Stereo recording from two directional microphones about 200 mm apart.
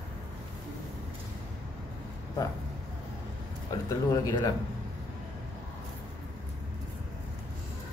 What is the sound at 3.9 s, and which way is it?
Speech, 15° left (ahead or behind).